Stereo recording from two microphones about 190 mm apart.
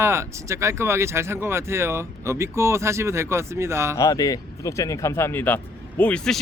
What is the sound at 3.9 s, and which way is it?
Speech, 20° left (ahead or behind).